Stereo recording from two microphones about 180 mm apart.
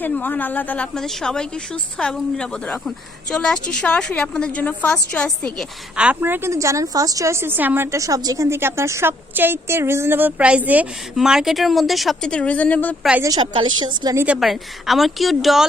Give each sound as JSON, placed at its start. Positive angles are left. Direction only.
{"t": 0.0, "sound": "a woman's voice", "side_deg": 10}
{"t": 6.0, "sound": "a woman's voice", "side_deg": -10}
{"t": 13.2, "sound": "a woman's voice", "side_deg": -25}
{"t": 14.3, "sound": "a woman's voice", "side_deg": 0}